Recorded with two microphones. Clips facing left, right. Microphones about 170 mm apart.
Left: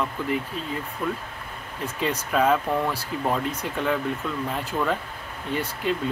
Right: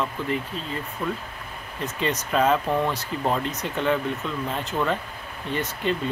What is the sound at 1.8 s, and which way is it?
Speech, 10° left (ahead or behind).